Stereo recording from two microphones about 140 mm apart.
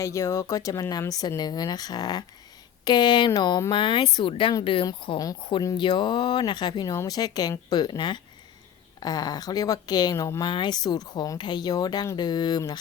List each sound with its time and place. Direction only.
0.0 s speech: 20° left (ahead or behind)